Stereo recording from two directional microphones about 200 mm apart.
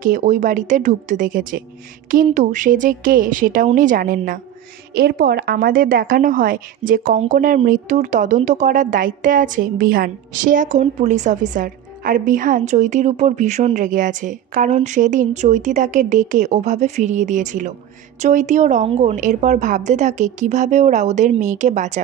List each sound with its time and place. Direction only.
0.0 s a woman's voice: 40° right (ahead or behind)